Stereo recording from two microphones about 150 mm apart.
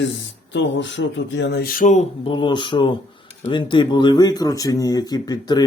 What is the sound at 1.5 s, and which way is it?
Speech, 75° left (ahead or behind).